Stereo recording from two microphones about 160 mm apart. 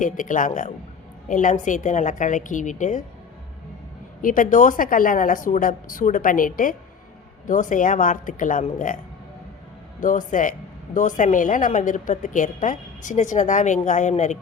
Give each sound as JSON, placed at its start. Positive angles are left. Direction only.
{"t": 0.0, "sound": "a woman's voice", "side_deg": 55}
{"t": 4.2, "sound": "a woman's voice", "side_deg": 60}
{"t": 10.0, "sound": "a woman's voice", "side_deg": 55}